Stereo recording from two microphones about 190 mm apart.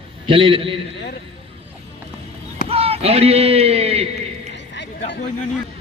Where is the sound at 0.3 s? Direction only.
30° right (ahead or behind).